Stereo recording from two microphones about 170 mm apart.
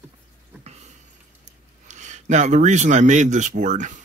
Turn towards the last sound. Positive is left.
turn(degrees=-45)  # may be behind; listen again after turning